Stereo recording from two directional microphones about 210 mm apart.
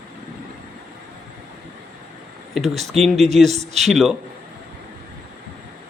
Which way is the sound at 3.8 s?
Centre (ahead or behind).